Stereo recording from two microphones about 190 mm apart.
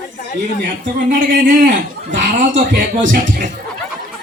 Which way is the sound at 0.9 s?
45° right (ahead or behind).